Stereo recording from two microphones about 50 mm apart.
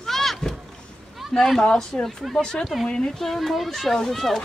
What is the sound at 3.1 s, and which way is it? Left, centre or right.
Speech, centre.